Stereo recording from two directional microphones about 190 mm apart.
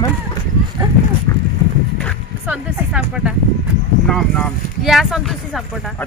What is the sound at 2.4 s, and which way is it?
Speech, 5° right (ahead or behind).